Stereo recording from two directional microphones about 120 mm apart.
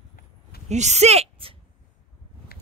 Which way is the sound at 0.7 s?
70° right (ahead or behind).